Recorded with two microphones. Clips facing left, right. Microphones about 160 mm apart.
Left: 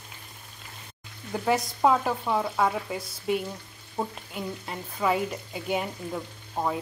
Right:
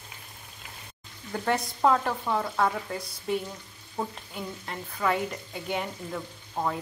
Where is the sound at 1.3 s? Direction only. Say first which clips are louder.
Left 2 dB; 5° left (ahead or behind).